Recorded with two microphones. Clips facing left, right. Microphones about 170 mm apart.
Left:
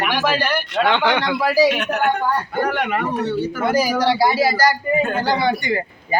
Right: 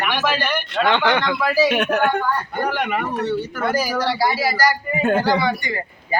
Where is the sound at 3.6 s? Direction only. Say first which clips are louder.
Left 4 dB; 20° left (ahead or behind).